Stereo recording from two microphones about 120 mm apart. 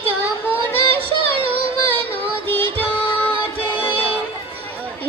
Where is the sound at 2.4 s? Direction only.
20° left (ahead or behind).